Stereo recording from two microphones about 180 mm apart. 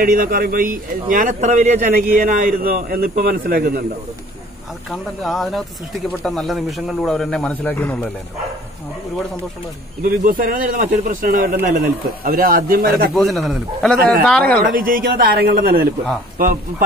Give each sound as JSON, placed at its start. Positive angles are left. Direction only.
{"t": 0.0, "sound": "a man's voice", "side_deg": -50}
{"t": 4.9, "sound": "speech", "side_deg": 0}
{"t": 10.0, "sound": "a man's voice", "side_deg": -50}
{"t": 13.1, "sound": "speech", "side_deg": 0}
{"t": 14.7, "sound": "a man's voice", "side_deg": -50}